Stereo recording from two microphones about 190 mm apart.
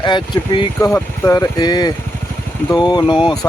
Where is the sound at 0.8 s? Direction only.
15° left (ahead or behind).